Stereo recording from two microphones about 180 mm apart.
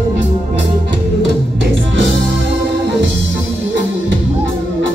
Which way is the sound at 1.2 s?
85° right.